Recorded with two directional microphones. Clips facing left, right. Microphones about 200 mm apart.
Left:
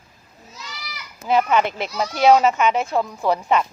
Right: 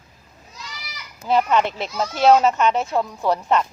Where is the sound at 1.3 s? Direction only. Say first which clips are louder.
Even; 5° left (ahead or behind).